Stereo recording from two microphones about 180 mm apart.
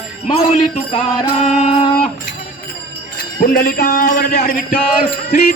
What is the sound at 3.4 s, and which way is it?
Speech, 55° left (ahead or behind).